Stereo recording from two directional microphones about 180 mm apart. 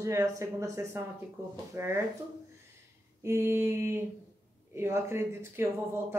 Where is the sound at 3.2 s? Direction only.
15° right (ahead or behind).